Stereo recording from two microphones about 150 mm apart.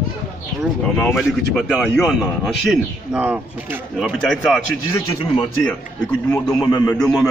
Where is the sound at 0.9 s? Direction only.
5° left (ahead or behind).